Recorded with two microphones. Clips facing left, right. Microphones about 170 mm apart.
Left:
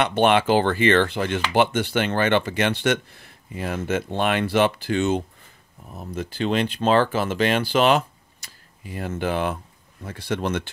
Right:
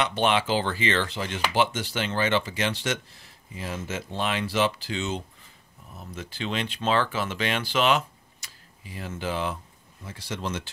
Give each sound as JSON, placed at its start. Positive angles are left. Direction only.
{"t": 0.0, "sound": "speech", "side_deg": 55}